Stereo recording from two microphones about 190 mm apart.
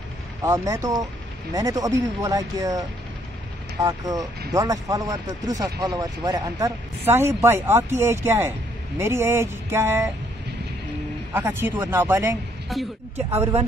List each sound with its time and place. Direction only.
0.4 s speech: 20° right (ahead or behind)
3.8 s speech: 20° right (ahead or behind)
11.3 s speech: 10° right (ahead or behind)
12.7 s speech: centre (ahead or behind)